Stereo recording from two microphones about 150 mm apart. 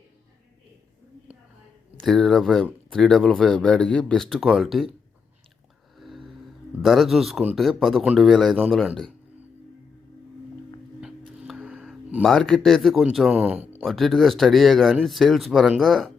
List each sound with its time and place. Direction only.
2.0 s speech: centre (ahead or behind)
6.0 s a sound: centre (ahead or behind)
6.8 s speech: centre (ahead or behind)
11.3 s speech: 5° right (ahead or behind)
13.8 s speech: centre (ahead or behind)